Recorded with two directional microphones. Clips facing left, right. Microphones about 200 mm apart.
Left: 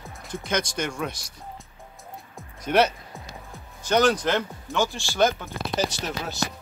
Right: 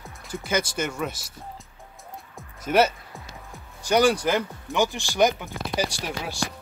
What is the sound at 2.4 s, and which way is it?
Music, 5° right (ahead or behind).